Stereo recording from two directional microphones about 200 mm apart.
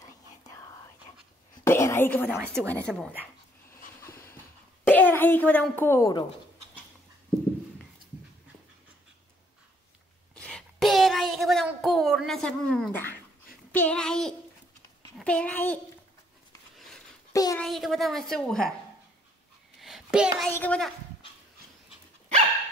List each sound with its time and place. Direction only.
0.0 s whispering: 15° left (ahead or behind)
1.6 s speech: 15° left (ahead or behind)
2.3 s a woman's voice: 5° right (ahead or behind)
4.0 s dog: 15° left (ahead or behind)
4.8 s speech: 10° left (ahead or behind)
10.3 s a sound: 5° left (ahead or behind)
13.7 s a woman's voice: 5° left (ahead or behind)
16.7 s a sound: centre (ahead or behind)
17.3 s a sound: 15° left (ahead or behind)
17.6 s a woman's voice: centre (ahead or behind)
19.8 s a sound: 5° right (ahead or behind)
20.4 s speech: 5° left (ahead or behind)